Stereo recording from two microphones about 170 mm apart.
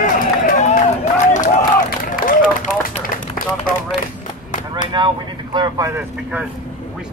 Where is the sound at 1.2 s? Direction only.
50° left (ahead or behind).